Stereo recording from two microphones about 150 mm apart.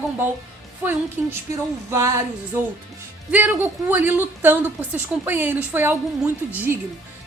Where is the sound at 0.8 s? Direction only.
15° right (ahead or behind).